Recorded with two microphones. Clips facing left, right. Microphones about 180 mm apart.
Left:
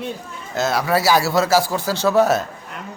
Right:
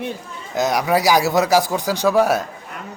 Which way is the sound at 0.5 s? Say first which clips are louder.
Right 1 dB; 15° right (ahead or behind).